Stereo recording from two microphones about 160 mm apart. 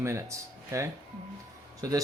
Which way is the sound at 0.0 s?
20° right (ahead or behind).